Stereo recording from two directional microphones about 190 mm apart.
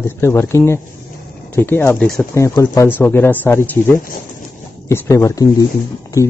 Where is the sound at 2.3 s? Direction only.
15° left (ahead or behind).